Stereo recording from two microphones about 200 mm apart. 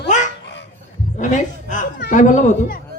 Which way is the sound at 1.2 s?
40° left (ahead or behind).